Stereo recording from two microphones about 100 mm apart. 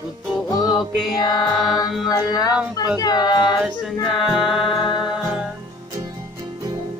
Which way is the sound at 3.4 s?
5° right (ahead or behind).